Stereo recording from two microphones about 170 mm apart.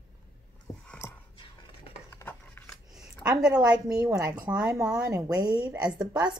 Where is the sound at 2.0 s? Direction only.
10° left (ahead or behind).